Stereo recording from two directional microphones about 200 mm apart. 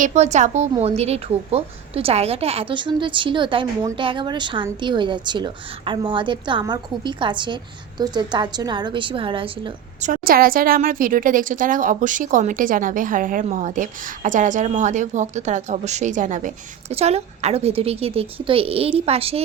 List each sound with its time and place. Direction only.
0.0 s a woman's voice: 35° right (ahead or behind)
10.0 s a woman's voice: 45° right (ahead or behind)